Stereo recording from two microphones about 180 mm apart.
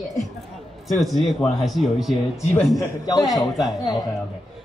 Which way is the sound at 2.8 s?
20° left (ahead or behind).